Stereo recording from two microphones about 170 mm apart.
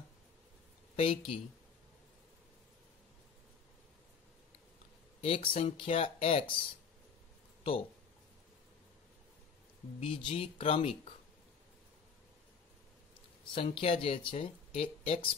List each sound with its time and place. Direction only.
0.9 s speech: 35° left (ahead or behind)
5.2 s speech: 35° left (ahead or behind)
9.9 s speech: 30° left (ahead or behind)
13.7 s speech: 35° left (ahead or behind)